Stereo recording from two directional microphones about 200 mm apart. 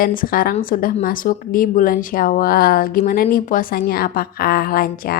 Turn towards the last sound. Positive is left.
turn(degrees=45)  # may be behind; listen again after turning